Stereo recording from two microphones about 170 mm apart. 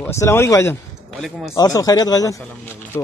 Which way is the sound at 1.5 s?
20° left (ahead or behind).